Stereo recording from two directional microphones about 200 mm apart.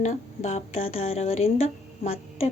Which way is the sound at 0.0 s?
35° left (ahead or behind).